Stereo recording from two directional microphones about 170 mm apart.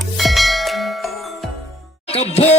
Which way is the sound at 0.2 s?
Centre (ahead or behind).